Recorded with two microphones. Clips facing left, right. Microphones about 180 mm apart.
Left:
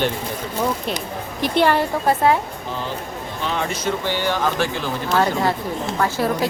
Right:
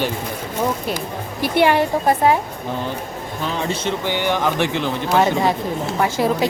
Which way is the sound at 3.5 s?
30° right (ahead or behind).